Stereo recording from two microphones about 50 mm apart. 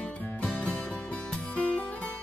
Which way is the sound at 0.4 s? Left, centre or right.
Centre.